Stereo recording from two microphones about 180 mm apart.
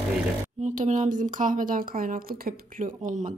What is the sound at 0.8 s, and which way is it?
A woman's voice, 45° right (ahead or behind).